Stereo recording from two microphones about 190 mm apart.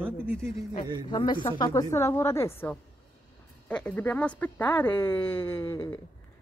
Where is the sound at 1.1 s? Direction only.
25° left (ahead or behind).